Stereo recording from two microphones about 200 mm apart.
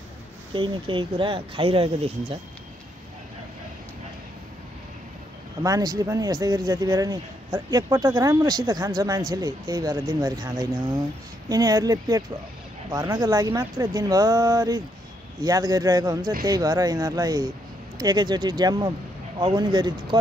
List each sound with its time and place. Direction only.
0.5 s speech: 25° right (ahead or behind)
5.6 s speech: 20° right (ahead or behind)